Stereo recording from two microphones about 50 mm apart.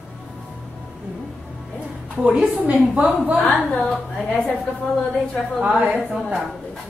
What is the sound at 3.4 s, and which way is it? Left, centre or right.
Speech, left.